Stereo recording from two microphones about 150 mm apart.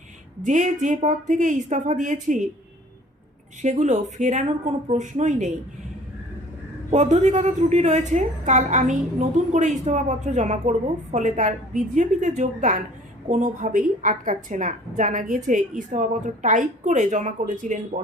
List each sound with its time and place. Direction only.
0.4 s a woman's voice: 55° right (ahead or behind)
3.6 s a woman's voice: 50° right (ahead or behind)
6.9 s a woman's voice: 50° right (ahead or behind)